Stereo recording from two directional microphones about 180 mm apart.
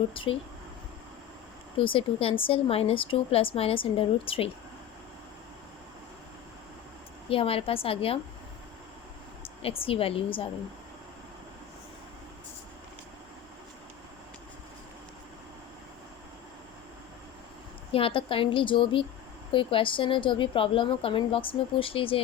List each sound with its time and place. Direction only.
0.1 s a woman's voice: 30° left (ahead or behind)
1.8 s a woman's voice: 30° left (ahead or behind)
7.3 s a woman's voice: 30° left (ahead or behind)
9.4 s a woman's voice: 30° left (ahead or behind)
17.9 s a woman's voice: 30° left (ahead or behind)